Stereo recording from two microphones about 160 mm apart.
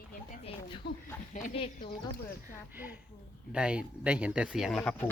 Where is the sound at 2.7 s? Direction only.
10° right (ahead or behind).